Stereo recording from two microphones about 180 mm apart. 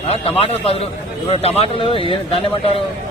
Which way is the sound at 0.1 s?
30° left (ahead or behind).